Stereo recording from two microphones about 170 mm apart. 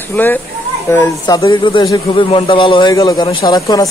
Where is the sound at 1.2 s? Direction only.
25° left (ahead or behind).